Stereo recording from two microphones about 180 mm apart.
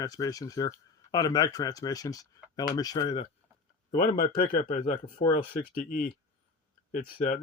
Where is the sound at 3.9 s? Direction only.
55° left (ahead or behind).